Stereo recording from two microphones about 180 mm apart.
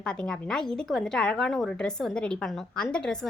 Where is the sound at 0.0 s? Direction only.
5° left (ahead or behind).